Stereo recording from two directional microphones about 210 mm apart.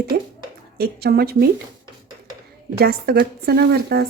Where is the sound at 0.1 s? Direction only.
45° right (ahead or behind).